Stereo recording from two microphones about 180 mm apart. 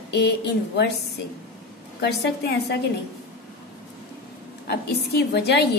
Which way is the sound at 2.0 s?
65° left (ahead or behind).